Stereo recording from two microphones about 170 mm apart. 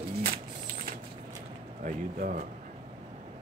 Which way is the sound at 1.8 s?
55° right (ahead or behind).